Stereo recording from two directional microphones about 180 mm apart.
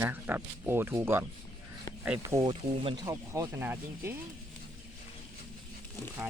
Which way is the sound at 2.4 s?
25° right (ahead or behind).